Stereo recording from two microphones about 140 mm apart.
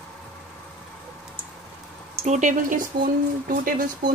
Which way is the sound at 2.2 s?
60° right (ahead or behind).